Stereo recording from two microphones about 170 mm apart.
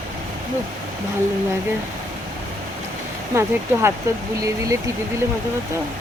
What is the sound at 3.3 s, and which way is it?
Speech, 15° right (ahead or behind).